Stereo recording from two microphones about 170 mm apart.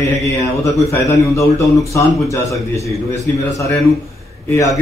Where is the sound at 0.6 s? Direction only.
20° left (ahead or behind).